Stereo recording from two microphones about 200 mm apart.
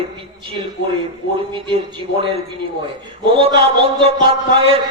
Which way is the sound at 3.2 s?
25° right (ahead or behind).